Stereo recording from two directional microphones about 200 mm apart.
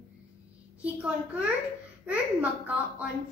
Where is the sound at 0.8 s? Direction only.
5° right (ahead or behind).